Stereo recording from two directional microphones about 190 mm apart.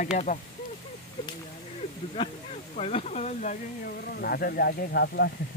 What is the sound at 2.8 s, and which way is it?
Speech, 35° left (ahead or behind).